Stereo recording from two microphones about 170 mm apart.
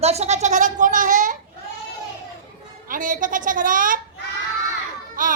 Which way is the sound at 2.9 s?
50° right (ahead or behind).